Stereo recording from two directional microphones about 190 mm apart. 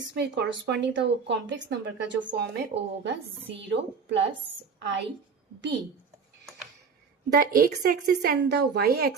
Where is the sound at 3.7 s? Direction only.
70° right (ahead or behind).